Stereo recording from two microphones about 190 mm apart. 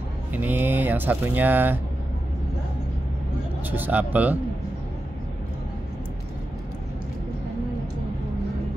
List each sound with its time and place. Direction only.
0.3 s speech: 10° right (ahead or behind)
3.7 s speech: 10° right (ahead or behind)